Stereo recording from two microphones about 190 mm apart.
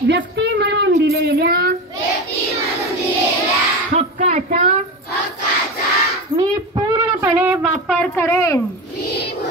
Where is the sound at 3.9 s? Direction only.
40° right (ahead or behind).